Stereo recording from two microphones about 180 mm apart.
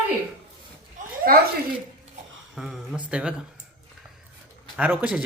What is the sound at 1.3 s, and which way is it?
Speech, 55° right (ahead or behind).